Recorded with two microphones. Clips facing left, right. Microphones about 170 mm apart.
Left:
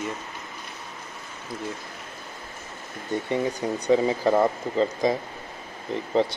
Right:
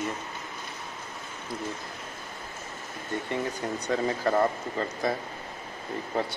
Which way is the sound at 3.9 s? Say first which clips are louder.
Left 6 dB; 15° left (ahead or behind).